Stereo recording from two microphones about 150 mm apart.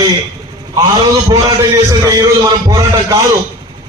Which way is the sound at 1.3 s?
25° right (ahead or behind).